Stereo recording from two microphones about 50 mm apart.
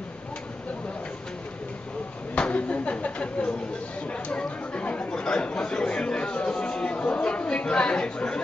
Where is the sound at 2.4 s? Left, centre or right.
Left.